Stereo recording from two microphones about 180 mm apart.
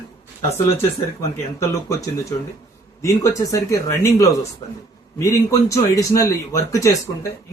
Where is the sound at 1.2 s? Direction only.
15° left (ahead or behind).